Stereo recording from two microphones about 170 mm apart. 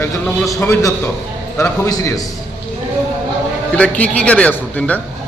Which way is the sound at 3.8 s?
10° left (ahead or behind).